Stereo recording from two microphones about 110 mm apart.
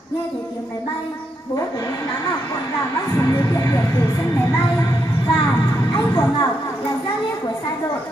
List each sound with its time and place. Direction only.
3.2 s a woman's voice: 30° left (ahead or behind)